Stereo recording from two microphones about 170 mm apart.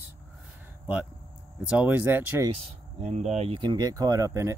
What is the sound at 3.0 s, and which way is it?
Speech, 40° right (ahead or behind).